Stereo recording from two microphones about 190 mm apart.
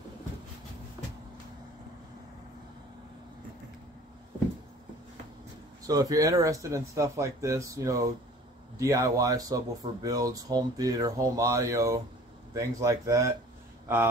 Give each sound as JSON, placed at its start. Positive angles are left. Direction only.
{"t": 5.9, "sound": "speech", "side_deg": -20}